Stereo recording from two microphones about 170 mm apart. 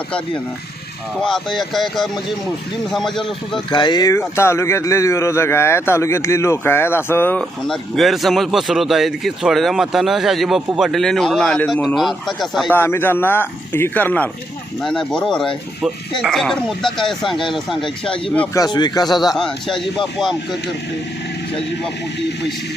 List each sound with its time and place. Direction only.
1.2 s speech: centre (ahead or behind)
3.7 s speech: 25° left (ahead or behind); by 12.7 s centre (ahead or behind)
12.7 s speech: 10° left (ahead or behind)
18.5 s speech: 25° left (ahead or behind)
19.2 s speech: centre (ahead or behind)